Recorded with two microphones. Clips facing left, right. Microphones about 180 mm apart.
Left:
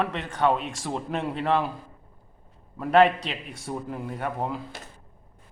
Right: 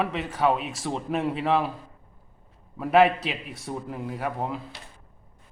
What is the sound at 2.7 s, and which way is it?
A man's voice, 5° right (ahead or behind).